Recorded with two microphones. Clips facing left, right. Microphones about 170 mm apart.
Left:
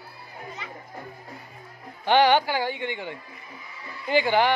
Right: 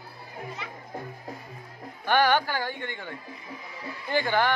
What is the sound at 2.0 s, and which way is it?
Speech, 20° left (ahead or behind).